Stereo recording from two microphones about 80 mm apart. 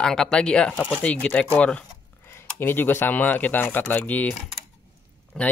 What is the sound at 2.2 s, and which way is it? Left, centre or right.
Speech, left.